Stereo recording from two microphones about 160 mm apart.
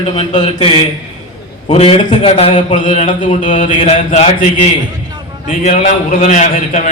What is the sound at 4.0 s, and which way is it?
Speech, 55° left (ahead or behind).